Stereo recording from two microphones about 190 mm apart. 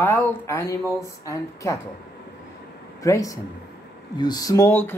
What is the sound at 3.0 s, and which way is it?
Speech, 15° left (ahead or behind).